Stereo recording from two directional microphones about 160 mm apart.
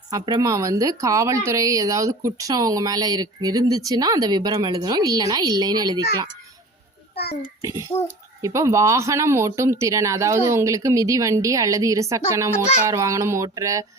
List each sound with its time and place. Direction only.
0.1 s speech: 20° right (ahead or behind)
7.6 s speech: 20° right (ahead or behind)